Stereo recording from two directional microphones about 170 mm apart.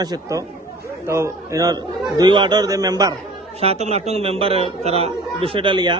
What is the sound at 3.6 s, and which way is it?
A man's voice, 40° right (ahead or behind).